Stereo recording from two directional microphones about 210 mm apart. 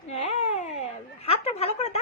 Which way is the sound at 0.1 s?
30° left (ahead or behind).